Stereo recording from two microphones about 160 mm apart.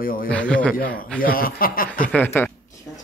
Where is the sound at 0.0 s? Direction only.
60° left (ahead or behind).